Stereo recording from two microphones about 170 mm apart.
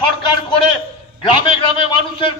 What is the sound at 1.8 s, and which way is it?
Speech, 30° left (ahead or behind).